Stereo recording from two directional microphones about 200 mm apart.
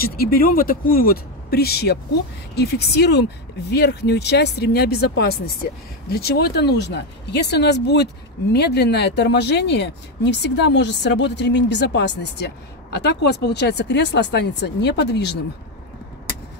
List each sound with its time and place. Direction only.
0.0 s speech: 50° left (ahead or behind)